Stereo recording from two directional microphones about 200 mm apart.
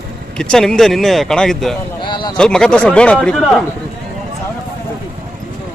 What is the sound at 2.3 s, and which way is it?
Speech, 5° left (ahead or behind).